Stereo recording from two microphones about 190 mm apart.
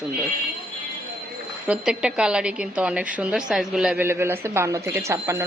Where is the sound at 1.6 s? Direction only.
5° right (ahead or behind).